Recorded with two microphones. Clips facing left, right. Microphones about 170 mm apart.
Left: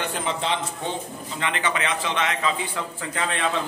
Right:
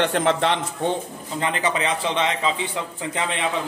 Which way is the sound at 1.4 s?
35° right (ahead or behind).